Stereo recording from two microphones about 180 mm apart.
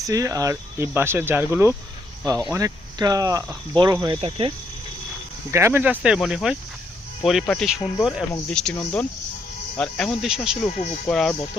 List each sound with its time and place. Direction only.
0.0 s speech: 20° right (ahead or behind)
5.5 s speech: 15° right (ahead or behind); by 11.3 s centre (ahead or behind)